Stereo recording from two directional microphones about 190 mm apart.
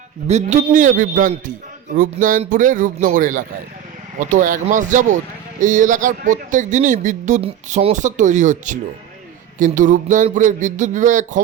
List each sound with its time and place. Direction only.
0.3 s speech: 35° right (ahead or behind)